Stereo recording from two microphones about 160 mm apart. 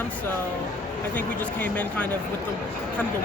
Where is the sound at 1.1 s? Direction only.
10° left (ahead or behind).